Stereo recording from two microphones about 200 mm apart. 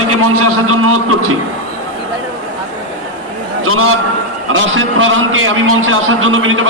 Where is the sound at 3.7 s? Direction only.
90° right.